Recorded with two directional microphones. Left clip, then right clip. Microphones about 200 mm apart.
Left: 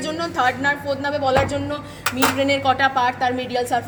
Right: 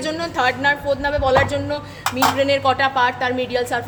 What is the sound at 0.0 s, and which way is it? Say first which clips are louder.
A woman's voice: right 1 dB; 25° right (ahead or behind).